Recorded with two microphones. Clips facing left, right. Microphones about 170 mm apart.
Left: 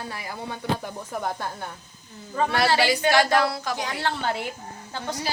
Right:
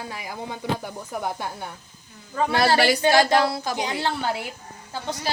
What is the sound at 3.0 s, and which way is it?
A woman's voice, 30° right (ahead or behind).